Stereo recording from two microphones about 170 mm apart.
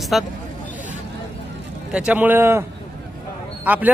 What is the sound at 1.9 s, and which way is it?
Speech, 5° right (ahead or behind).